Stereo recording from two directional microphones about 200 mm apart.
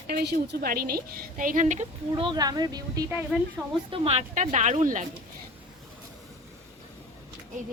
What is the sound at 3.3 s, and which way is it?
Speech, 5° right (ahead or behind).